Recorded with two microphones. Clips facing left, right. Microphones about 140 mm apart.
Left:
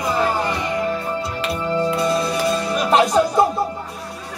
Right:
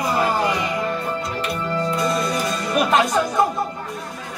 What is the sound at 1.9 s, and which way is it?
Music, 30° left (ahead or behind).